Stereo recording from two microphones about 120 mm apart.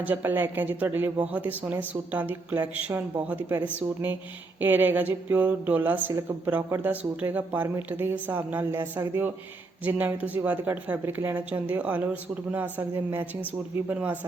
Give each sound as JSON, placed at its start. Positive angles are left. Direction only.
{"t": 0.0, "sound": "speech", "side_deg": -15}